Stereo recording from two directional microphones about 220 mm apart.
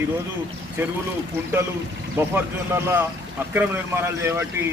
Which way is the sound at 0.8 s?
10° right (ahead or behind).